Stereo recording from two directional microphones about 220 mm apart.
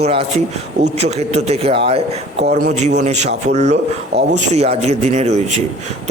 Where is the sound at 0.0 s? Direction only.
25° right (ahead or behind).